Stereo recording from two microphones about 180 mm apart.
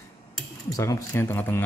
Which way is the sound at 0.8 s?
15° left (ahead or behind).